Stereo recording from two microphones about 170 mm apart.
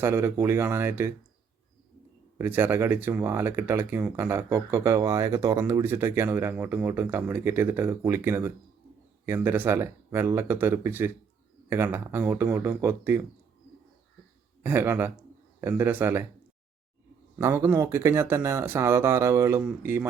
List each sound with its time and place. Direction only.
0.0 s speech: 15° right (ahead or behind)
2.4 s speech: 10° right (ahead or behind)
14.6 s speech: 15° right (ahead or behind)
17.3 s speech: 15° right (ahead or behind)